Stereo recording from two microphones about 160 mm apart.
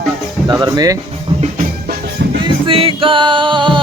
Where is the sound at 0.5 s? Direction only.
20° right (ahead or behind).